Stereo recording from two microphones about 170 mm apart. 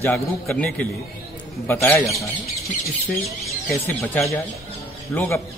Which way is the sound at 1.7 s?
10° left (ahead or behind).